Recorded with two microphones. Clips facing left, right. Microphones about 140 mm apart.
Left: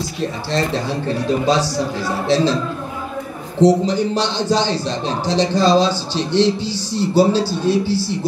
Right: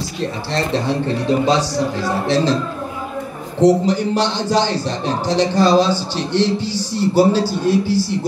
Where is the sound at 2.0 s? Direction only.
20° right (ahead or behind).